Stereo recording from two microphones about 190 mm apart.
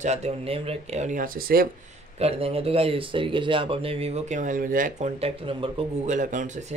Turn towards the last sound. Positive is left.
turn(degrees=-40)  # may be behind; listen again after turning